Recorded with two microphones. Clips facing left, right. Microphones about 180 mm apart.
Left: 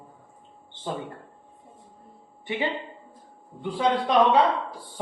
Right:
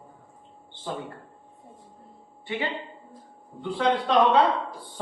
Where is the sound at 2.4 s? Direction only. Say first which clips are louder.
Left 2 dB; 20° left (ahead or behind).